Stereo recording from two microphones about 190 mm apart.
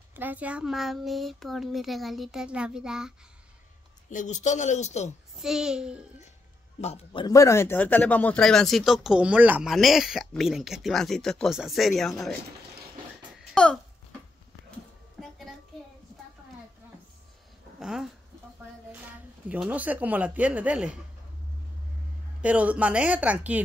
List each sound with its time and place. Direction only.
0.1 s speech: 10° right (ahead or behind)
4.1 s a man's voice: 40° left (ahead or behind)
5.4 s speech: 5° right (ahead or behind)
6.8 s speech: 30° left (ahead or behind); by 12.4 s centre (ahead or behind)
13.4 s a sound: 5° left (ahead or behind)
15.1 s a sound: centre (ahead or behind)
17.7 s speech: centre (ahead or behind)
19.5 s speech: 10° right (ahead or behind)
22.4 s speech: 5° right (ahead or behind)